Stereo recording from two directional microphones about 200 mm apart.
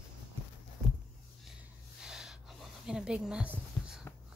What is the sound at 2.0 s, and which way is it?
Gasp, 5° right (ahead or behind).